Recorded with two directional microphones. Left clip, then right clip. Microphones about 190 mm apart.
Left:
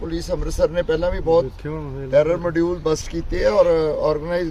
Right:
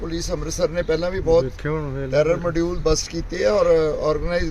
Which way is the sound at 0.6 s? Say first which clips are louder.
Left 2 dB; 15° left (ahead or behind).